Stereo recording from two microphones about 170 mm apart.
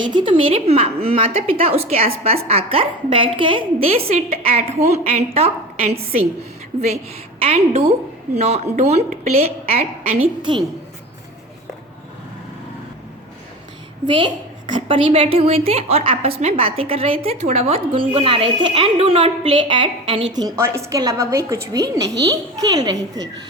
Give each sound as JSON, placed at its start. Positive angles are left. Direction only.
{"t": 0.0, "sound": "a woman's voice", "side_deg": -30}
{"t": 7.4, "sound": "a woman's voice", "side_deg": -35}
{"t": 14.8, "sound": "a woman's voice", "side_deg": -30}
{"t": 20.3, "sound": "a woman's voice", "side_deg": -20}